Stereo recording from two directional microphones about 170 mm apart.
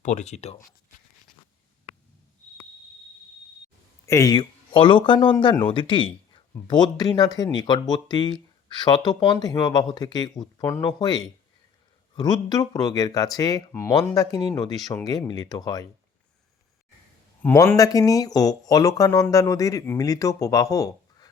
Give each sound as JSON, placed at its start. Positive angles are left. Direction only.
{"t": 0.0, "sound": "speech", "side_deg": 45}
{"t": 4.0, "sound": "speech", "side_deg": 20}
{"t": 17.4, "sound": "speech", "side_deg": 15}